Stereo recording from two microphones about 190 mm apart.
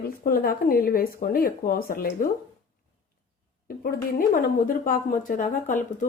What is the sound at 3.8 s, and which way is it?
A woman's voice, 50° left (ahead or behind).